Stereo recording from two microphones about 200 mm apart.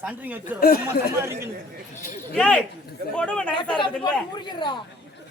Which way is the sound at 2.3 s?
5° left (ahead or behind).